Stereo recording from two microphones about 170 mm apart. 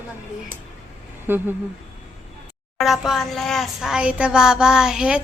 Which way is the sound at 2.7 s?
Centre (ahead or behind).